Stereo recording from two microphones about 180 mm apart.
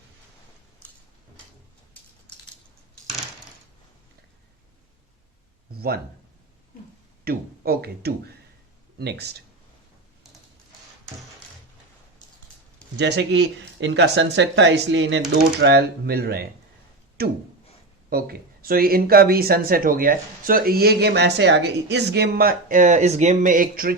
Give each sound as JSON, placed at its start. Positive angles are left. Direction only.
{"t": 7.3, "sound": "speech", "side_deg": -60}
{"t": 13.0, "sound": "speech", "side_deg": -70}
{"t": 15.3, "sound": "speech", "side_deg": -70}